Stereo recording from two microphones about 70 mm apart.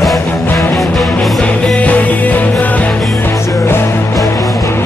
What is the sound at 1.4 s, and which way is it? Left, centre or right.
Music, centre.